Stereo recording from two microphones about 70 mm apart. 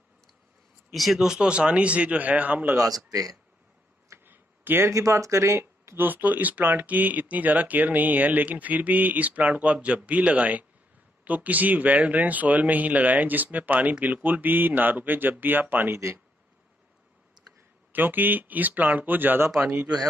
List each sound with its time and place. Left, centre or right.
0.9 s speech: centre; by 2.6 s right
3.1 s speech: right
4.2 s a sound: right
4.9 s speech: right
17.6 s speech: right
19.6 s speech: centre